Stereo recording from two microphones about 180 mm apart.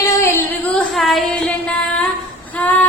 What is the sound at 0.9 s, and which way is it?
Music, centre (ahead or behind).